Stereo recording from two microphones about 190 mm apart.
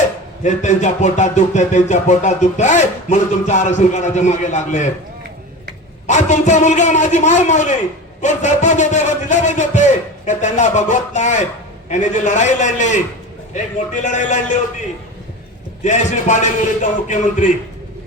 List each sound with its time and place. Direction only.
0.4 s music: 40° left (ahead or behind)
6.1 s music: 40° left (ahead or behind)
14.0 s music: 40° left (ahead or behind)
15.8 s music: 40° left (ahead or behind)